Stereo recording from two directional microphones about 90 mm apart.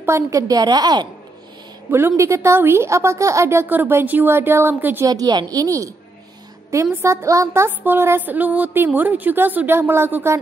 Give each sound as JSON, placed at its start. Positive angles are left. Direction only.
{"t": 0.0, "sound": "a woman's voice", "side_deg": -35}
{"t": 1.9, "sound": "speech", "side_deg": -25}
{"t": 5.0, "sound": "a woman's voice", "side_deg": -45}